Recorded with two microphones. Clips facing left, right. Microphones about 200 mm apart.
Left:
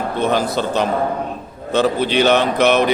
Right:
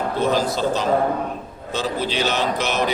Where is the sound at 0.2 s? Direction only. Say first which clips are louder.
Left 2 dB; 60° left (ahead or behind).